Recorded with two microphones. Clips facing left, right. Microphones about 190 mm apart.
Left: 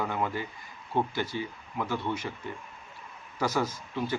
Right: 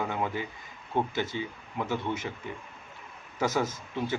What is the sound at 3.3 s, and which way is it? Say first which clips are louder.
Speech: right 1 dB; 20° right (ahead or behind).